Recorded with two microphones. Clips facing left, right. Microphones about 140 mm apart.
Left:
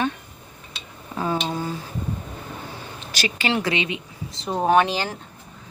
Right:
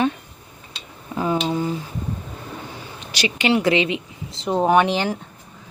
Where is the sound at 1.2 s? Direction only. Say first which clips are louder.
Right 3 dB; 15° right (ahead or behind).